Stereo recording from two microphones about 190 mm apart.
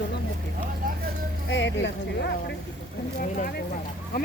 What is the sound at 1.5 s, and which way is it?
Speech, 75° left (ahead or behind).